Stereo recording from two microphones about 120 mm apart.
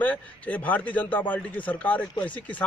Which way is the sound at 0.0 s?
15° left (ahead or behind).